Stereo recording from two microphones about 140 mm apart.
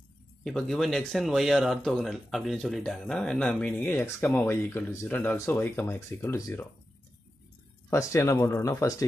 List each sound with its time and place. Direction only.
0.4 s speech: 5° left (ahead or behind); by 6.6 s 20° left (ahead or behind)
7.9 s speech: 20° left (ahead or behind)